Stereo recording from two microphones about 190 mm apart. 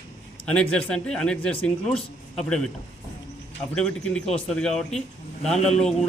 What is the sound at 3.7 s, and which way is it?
A man's voice, 5° left (ahead or behind).